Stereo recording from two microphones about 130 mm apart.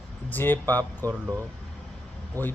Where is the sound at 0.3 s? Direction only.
15° left (ahead or behind).